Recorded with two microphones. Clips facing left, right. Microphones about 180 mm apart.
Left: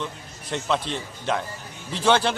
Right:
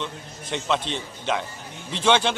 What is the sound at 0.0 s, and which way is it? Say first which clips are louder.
A man's voice: even; 5° left (ahead or behind).